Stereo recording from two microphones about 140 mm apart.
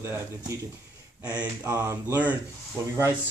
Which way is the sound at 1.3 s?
25° right (ahead or behind).